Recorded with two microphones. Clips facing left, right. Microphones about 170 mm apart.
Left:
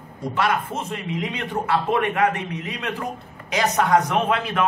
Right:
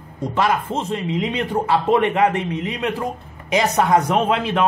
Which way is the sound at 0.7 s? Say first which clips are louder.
Right 5 dB; 30° right (ahead or behind).